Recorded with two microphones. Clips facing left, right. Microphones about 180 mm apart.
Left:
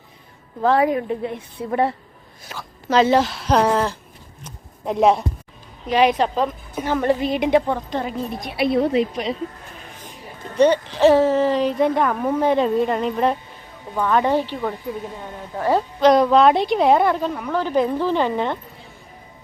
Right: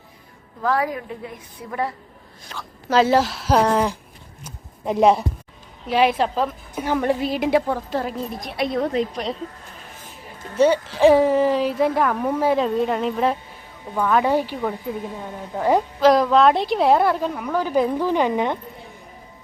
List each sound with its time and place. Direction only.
0.6 s a woman's voice: 25° left (ahead or behind)
2.4 s a woman's voice: 5° left (ahead or behind)
2.9 s a woman's voice: 5° right (ahead or behind)
4.4 s a sound: centre (ahead or behind)
5.9 s a woman's voice: 5° right (ahead or behind)
10.6 s a woman's voice: 5° right (ahead or behind)